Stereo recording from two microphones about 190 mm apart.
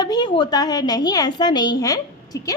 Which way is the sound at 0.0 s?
20° left (ahead or behind).